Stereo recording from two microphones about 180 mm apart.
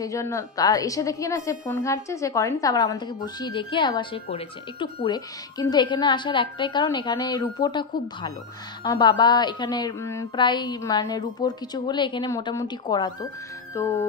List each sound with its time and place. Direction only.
0.0 s a woman's voice: 15° left (ahead or behind)
13.7 s music: 15° left (ahead or behind)